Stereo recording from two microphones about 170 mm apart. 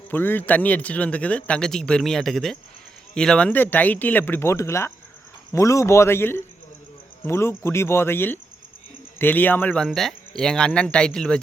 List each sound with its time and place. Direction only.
0.1 s speech: 10° left (ahead or behind)